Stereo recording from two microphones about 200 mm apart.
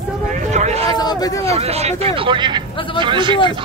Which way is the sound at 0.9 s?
20° left (ahead or behind).